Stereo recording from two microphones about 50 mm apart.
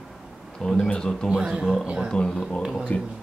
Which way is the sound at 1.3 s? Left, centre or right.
Centre.